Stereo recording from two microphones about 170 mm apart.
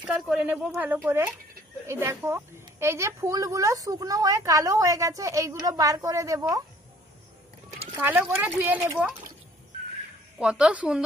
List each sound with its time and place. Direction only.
0.0 s a woman's voice: 5° right (ahead or behind); by 6.6 s 20° right (ahead or behind)
8.0 s speech: 10° right (ahead or behind)
10.4 s a woman's voice: 5° right (ahead or behind)